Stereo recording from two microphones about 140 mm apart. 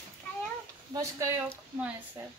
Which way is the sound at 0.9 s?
20° right (ahead or behind).